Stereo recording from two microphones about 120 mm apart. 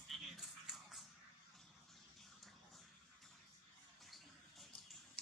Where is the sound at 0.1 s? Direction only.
Centre (ahead or behind).